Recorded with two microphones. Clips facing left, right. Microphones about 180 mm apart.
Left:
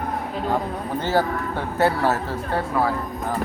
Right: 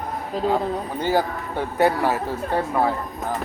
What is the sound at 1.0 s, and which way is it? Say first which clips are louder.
Speech: left 1 dB; 15° right (ahead or behind).